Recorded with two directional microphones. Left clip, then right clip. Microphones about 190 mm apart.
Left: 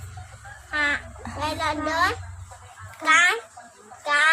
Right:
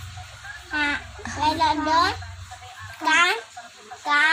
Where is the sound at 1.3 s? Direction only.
20° left (ahead or behind).